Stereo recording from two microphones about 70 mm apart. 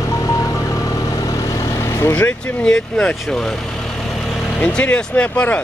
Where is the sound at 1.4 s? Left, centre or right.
Left.